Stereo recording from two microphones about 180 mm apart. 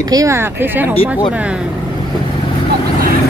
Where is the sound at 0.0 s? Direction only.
20° right (ahead or behind).